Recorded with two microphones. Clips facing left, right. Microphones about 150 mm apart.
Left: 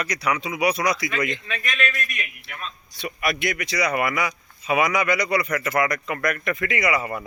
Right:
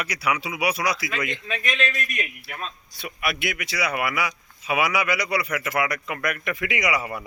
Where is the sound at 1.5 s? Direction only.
20° right (ahead or behind).